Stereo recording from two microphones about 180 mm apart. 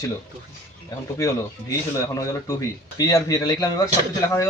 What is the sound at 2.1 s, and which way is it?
Speech, 15° left (ahead or behind).